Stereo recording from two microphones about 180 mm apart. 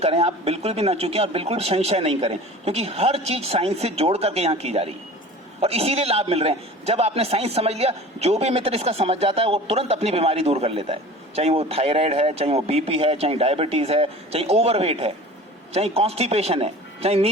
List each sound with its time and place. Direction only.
0.0 s a man's voice: 35° right (ahead or behind)